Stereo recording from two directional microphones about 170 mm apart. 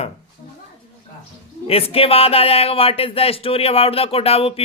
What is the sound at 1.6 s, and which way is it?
Speech, 35° left (ahead or behind).